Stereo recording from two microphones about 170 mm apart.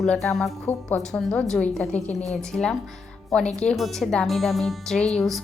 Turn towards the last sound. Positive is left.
turn(degrees=0)  # may be behind; listen again after turning